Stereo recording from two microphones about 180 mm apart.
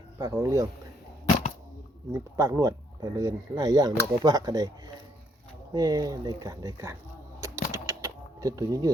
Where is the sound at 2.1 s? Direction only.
20° right (ahead or behind).